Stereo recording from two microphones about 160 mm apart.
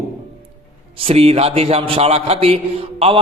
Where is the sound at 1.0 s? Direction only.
40° right (ahead or behind).